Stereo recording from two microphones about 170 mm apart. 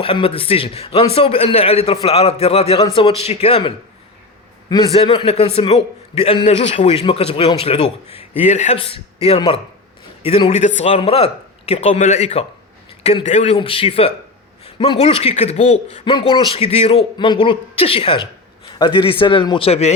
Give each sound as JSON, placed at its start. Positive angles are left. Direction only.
{"t": 0.0, "sound": "speech", "side_deg": 30}
{"t": 4.7, "sound": "a man's voice", "side_deg": 35}